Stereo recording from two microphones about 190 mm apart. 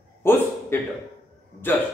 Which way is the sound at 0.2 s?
10° left (ahead or behind).